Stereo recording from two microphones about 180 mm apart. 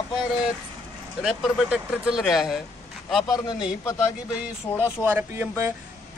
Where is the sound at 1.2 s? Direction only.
Centre (ahead or behind).